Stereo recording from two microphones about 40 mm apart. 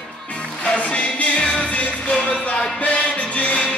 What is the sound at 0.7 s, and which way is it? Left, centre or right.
Music, left.